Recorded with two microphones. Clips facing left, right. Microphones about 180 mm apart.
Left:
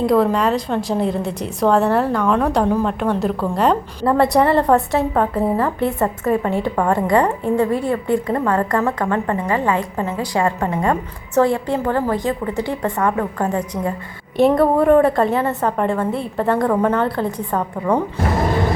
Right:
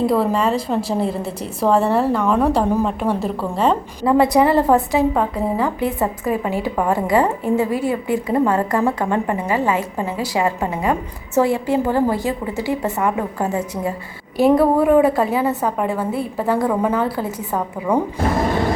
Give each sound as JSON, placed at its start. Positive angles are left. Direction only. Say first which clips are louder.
{"t": 0.0, "sound": "a woman's voice", "louder": "left 2 dB", "side_deg": -5}
{"t": 11.6, "sound": "a woman's voice", "louder": "right 2 dB", "side_deg": -10}